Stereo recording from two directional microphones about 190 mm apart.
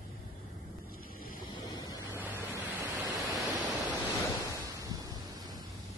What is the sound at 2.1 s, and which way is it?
Pink noise, 10° right (ahead or behind).